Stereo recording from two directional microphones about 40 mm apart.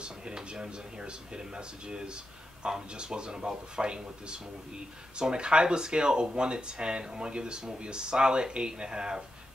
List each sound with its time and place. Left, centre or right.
0.0 s speech: right